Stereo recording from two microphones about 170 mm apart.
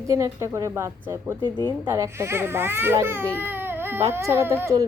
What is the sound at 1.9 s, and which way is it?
A child's voice, 15° right (ahead or behind).